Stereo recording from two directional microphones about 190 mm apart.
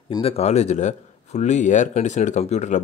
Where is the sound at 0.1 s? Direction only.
30° left (ahead or behind).